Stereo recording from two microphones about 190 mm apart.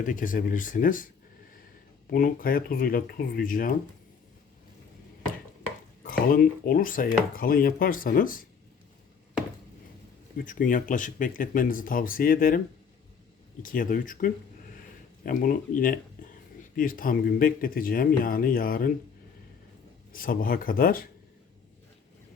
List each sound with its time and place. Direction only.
0.0 s speech: 45° left (ahead or behind)
2.0 s speech: 50° left (ahead or behind)
6.0 s speech: 50° left (ahead or behind)
10.3 s speech: 45° left (ahead or behind)
20.1 s speech: 50° left (ahead or behind)